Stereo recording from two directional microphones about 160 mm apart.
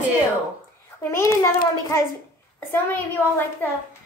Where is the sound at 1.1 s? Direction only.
15° left (ahead or behind).